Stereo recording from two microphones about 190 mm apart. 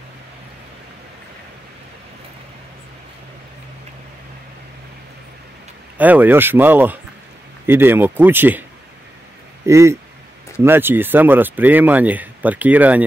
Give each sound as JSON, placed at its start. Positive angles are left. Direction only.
{"t": 5.9, "sound": "speech", "side_deg": -10}
{"t": 9.7, "sound": "speech", "side_deg": -15}